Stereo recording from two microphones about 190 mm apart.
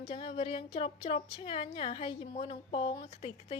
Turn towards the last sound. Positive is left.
turn(degrees=30)  # may be behind; listen again after turning